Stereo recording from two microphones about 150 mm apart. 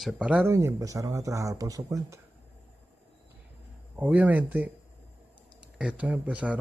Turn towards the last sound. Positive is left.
turn(degrees=-10)  # may be behind; listen again after turning